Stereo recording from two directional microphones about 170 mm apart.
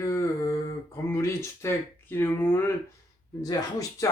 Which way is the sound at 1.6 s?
15° left (ahead or behind).